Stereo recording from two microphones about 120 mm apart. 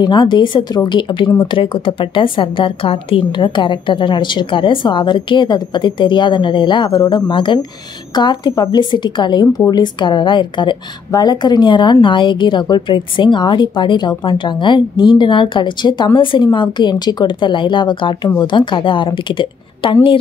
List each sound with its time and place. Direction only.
0.0 s a woman's voice: 40° left (ahead or behind)